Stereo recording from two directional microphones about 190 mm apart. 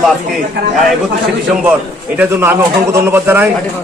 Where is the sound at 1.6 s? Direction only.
10° right (ahead or behind).